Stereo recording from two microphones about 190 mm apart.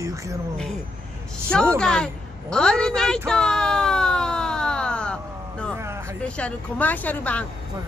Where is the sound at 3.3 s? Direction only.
5° left (ahead or behind).